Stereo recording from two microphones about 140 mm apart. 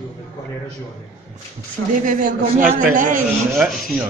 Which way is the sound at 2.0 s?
70° right (ahead or behind).